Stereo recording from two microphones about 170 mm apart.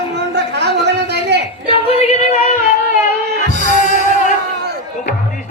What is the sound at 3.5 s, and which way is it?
Music, 50° left (ahead or behind).